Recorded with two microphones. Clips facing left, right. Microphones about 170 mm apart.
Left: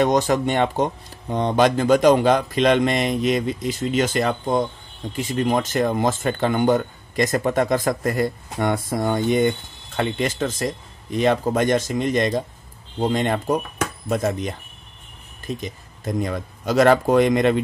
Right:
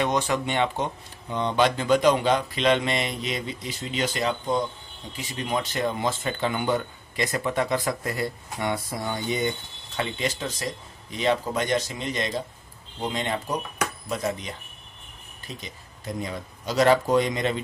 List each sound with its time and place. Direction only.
0.0 s speech: 40° left (ahead or behind)